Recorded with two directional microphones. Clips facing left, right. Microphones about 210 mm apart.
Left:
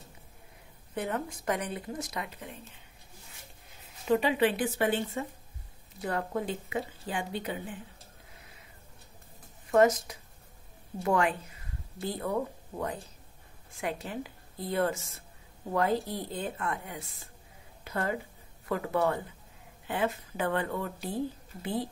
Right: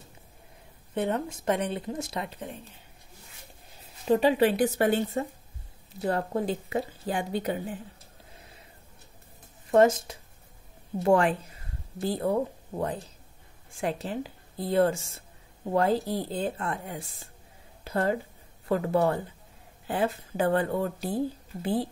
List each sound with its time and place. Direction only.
0.9 s speech: 25° right (ahead or behind)
4.1 s speech: 35° right (ahead or behind)
9.7 s speech: 30° right (ahead or behind)
13.7 s speech: 30° right (ahead or behind)